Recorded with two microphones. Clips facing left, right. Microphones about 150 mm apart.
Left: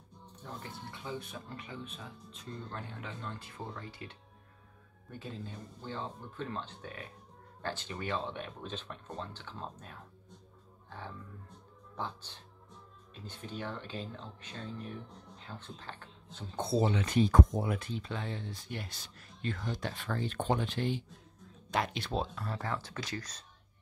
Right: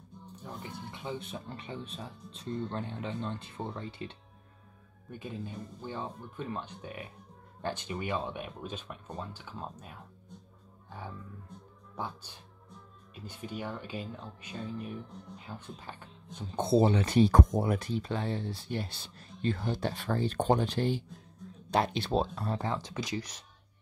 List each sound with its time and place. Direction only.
0.4 s speech: 15° right (ahead or behind)
5.2 s speech: 15° right (ahead or behind)
16.8 s speech: 35° right (ahead or behind); by 23.3 s 15° right (ahead or behind)